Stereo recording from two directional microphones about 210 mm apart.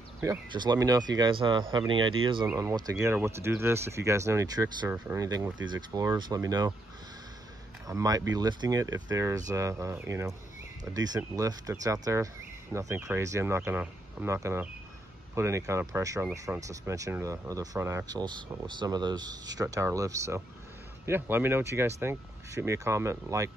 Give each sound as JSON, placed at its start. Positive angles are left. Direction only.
{"t": 0.2, "sound": "speech", "side_deg": -15}
{"t": 7.8, "sound": "speech", "side_deg": -15}